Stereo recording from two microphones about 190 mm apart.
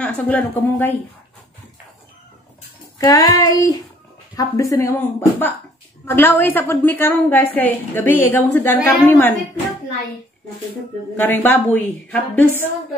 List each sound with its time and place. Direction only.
0.0 s a woman's voice: 10° left (ahead or behind)
3.0 s child singing: 20° left (ahead or behind)
4.4 s a woman's voice: 15° left (ahead or behind)
11.1 s a woman's voice: 10° left (ahead or behind)